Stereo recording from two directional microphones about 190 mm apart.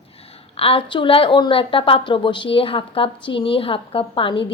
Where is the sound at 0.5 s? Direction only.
30° left (ahead or behind).